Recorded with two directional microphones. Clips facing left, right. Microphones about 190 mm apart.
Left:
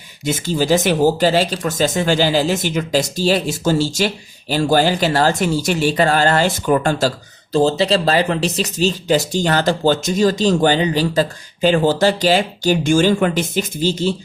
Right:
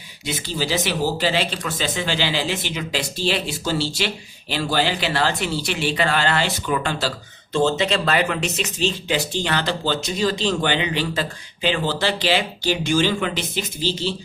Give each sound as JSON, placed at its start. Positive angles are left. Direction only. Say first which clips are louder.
{"t": 0.3, "sound": "speech", "louder": "left 8 dB", "side_deg": 45}
{"t": 7.5, "sound": "speech", "louder": "left 5 dB", "side_deg": 35}